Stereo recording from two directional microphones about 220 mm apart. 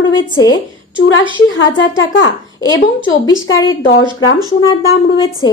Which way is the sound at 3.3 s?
60° left (ahead or behind).